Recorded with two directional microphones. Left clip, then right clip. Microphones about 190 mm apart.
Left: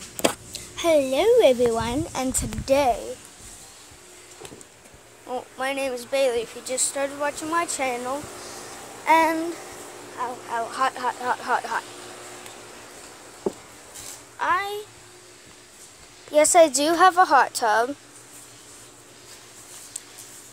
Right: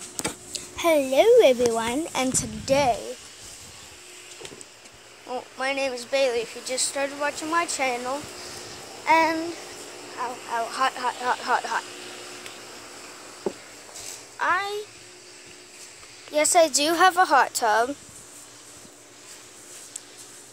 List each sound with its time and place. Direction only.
0.5 s speech: centre (ahead or behind)
5.3 s speech: 5° left (ahead or behind)
9.0 s child singing: 15° left (ahead or behind)
10.1 s speech: centre (ahead or behind)
14.4 s speech: centre (ahead or behind)
16.3 s a woman's voice: 35° left (ahead or behind)
16.8 s speech: 15° left (ahead or behind); by 17.9 s centre (ahead or behind)